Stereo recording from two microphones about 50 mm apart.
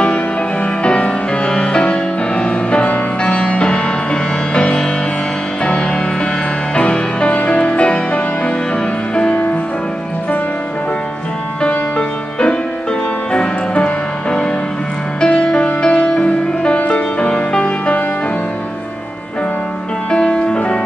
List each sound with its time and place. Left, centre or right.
0.8 s music: left
13.3 s music: left
20.1 s music: centre